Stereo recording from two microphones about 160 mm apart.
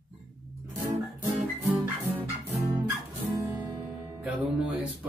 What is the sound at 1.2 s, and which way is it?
Music, 15° right (ahead or behind).